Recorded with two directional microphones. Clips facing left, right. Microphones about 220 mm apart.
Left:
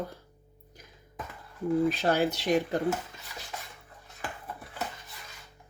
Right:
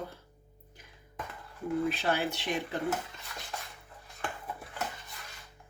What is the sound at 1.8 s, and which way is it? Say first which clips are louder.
Speech: left 5 dB; 40° left (ahead or behind).